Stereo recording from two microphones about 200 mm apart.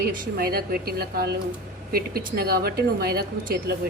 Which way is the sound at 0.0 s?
50° right (ahead or behind).